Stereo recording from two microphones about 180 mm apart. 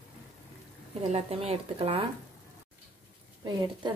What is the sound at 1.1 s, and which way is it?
Speech, 35° right (ahead or behind).